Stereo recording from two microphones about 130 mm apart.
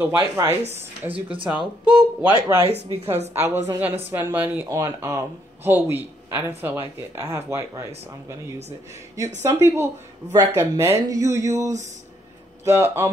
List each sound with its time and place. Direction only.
0.0 s speech: 20° right (ahead or behind)
1.1 s speech: 40° right (ahead or behind)
2.6 s speech: 50° right (ahead or behind)
3.3 s speech: 20° right (ahead or behind)